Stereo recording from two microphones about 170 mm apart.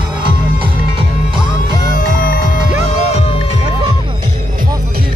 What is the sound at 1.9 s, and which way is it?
Music, 60° left (ahead or behind).